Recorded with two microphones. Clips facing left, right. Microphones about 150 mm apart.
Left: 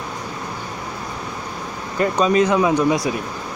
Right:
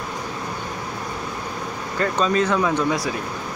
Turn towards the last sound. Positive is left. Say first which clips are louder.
# left 4 dB
turn(degrees=15)  # may be behind; listen again after turning